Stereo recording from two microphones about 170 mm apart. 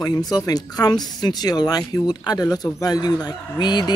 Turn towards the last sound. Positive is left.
turn(degrees=25)  # may be behind; listen again after turning